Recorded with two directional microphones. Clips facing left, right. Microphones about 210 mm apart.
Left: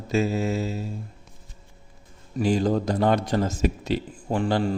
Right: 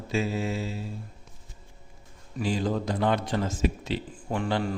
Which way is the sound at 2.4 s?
45° left (ahead or behind).